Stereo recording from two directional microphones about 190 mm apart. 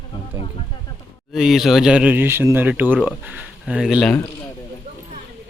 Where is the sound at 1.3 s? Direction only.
5° right (ahead or behind).